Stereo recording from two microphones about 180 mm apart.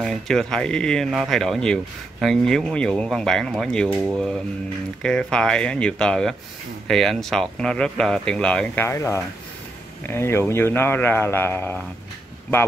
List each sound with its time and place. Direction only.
0.0 s a man's voice: centre (ahead or behind)